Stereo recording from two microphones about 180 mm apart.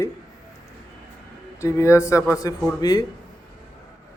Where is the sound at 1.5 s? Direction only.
15° left (ahead or behind).